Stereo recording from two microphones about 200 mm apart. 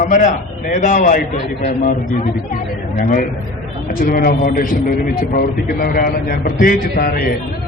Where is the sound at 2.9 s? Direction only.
40° left (ahead or behind).